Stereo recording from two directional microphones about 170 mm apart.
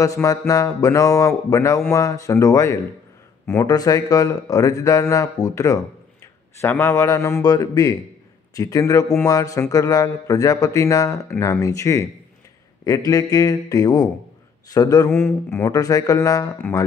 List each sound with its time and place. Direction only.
0.0 s a man's voice: 20° left (ahead or behind)